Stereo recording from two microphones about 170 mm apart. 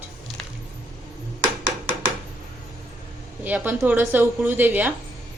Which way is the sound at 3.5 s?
10° right (ahead or behind).